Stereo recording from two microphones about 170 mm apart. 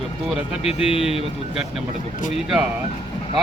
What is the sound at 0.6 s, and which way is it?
Speech, 35° left (ahead or behind).